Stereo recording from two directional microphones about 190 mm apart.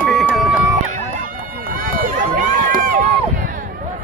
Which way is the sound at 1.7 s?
45° right (ahead or behind).